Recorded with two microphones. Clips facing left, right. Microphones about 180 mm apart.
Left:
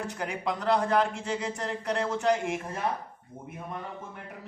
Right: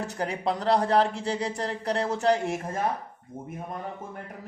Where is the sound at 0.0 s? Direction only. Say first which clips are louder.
Right 3 dB; 35° right (ahead or behind).